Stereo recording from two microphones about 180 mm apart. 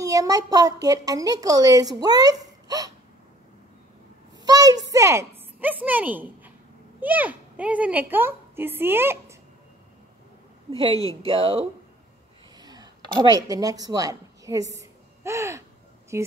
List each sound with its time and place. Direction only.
0.0 s a woman's voice: 20° right (ahead or behind)
4.4 s a sound: 20° right (ahead or behind)
4.9 s a woman's voice: 15° right (ahead or behind)
11.2 s speech: 30° right (ahead or behind)
14.8 s a sound: 15° right (ahead or behind)
16.1 s speech: 15° right (ahead or behind)